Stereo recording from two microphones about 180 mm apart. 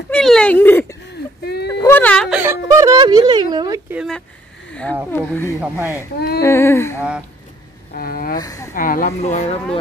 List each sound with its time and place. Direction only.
0.1 s speech: 5° left (ahead or behind)
1.7 s a sound: 15° left (ahead or behind)
2.2 s speech: 10° right (ahead or behind)
5.1 s speech: 10° left (ahead or behind)
5.6 s speech: 10° right (ahead or behind)
6.1 s speech: 60° left (ahead or behind)
6.4 s speech: 15° left (ahead or behind)
7.9 s a woman's voice: 55° left (ahead or behind)
8.4 s speech: 20° left (ahead or behind)
8.7 s a woman's voice: 50° left (ahead or behind)